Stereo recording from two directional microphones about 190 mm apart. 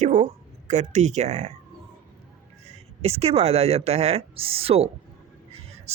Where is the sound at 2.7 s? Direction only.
30° right (ahead or behind).